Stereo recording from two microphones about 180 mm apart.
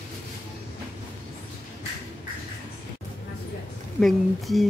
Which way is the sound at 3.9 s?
Centre (ahead or behind).